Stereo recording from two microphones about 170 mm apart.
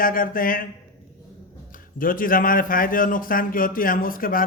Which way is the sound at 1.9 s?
55° left (ahead or behind).